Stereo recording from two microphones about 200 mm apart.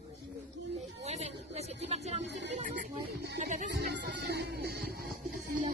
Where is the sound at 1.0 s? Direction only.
35° right (ahead or behind).